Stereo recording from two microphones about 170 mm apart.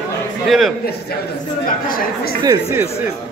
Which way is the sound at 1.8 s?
60° left (ahead or behind).